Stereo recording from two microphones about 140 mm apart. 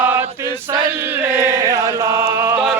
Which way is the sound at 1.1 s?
15° right (ahead or behind).